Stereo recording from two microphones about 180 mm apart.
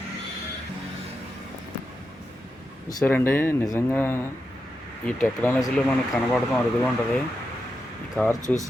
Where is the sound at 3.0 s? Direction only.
10° left (ahead or behind).